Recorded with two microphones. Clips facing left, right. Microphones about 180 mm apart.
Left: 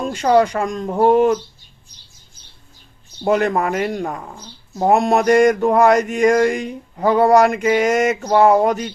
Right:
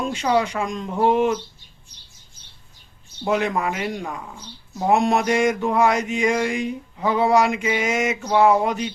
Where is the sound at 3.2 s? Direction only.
45° left (ahead or behind).